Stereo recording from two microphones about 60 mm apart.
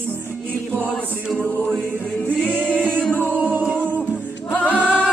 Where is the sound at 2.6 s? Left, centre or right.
Centre.